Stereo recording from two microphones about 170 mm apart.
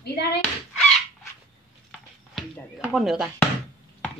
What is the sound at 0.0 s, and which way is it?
Speech, 70° left (ahead or behind).